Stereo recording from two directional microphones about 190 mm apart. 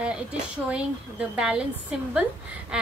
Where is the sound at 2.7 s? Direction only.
5° right (ahead or behind).